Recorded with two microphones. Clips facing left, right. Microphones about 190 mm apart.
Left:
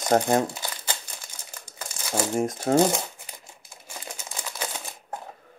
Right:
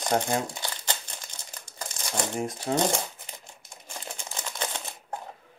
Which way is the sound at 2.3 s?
45° left (ahead or behind).